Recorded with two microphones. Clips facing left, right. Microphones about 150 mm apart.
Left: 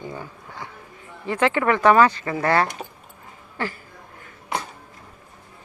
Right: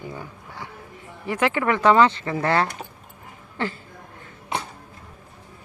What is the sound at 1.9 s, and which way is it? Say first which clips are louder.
Speech: right 1 dB; 20° right (ahead or behind).